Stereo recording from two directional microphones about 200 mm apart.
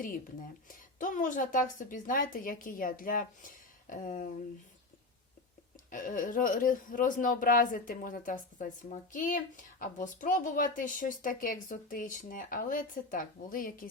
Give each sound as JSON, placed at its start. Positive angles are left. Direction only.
{"t": 0.0, "sound": "a woman's voice", "side_deg": 45}
{"t": 5.9, "sound": "a woman's voice", "side_deg": 40}